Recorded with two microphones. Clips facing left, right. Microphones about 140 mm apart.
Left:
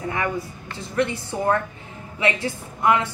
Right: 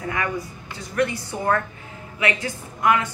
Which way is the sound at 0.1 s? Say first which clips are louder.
Even; 25° left (ahead or behind).